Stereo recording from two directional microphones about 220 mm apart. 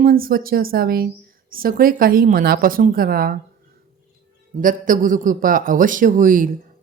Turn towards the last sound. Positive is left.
turn(degrees=-40)  # may be behind; listen again after turning